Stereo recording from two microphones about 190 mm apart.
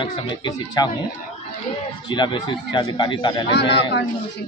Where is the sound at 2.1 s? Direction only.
25° left (ahead or behind).